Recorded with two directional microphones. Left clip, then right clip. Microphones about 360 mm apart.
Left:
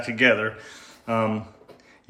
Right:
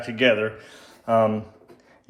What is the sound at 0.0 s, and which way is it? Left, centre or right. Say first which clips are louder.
Speech: even; centre.